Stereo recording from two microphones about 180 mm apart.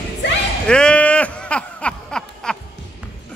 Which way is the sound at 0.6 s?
5° left (ahead or behind).